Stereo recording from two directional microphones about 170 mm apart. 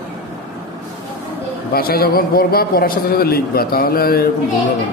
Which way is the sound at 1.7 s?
60° left (ahead or behind).